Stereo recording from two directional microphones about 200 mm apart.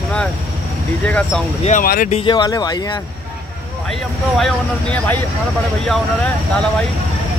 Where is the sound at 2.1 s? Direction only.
25° left (ahead or behind).